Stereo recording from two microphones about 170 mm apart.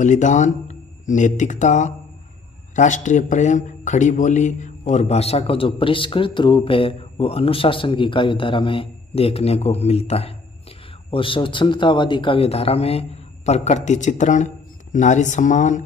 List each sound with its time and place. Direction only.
0.0 s speech: 45° left (ahead or behind)